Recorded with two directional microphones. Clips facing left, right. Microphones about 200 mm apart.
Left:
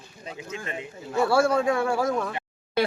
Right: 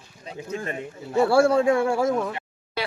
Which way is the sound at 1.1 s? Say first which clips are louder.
Right 3 dB; 25° right (ahead or behind).